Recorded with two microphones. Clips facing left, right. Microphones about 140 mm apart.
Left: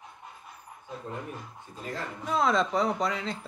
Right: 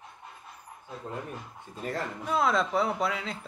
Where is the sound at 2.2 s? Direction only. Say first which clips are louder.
Left 1 dB; 5° right (ahead or behind).